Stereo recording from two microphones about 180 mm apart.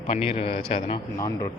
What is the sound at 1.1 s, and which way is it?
Speech, 20° left (ahead or behind).